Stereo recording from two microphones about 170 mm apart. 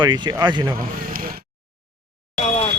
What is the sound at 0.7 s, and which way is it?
Speech, 55° right (ahead or behind).